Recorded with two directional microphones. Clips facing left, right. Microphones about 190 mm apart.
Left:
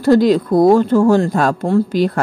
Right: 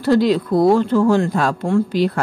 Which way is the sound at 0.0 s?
45° left (ahead or behind).